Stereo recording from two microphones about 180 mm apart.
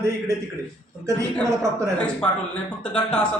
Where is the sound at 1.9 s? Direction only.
5° left (ahead or behind).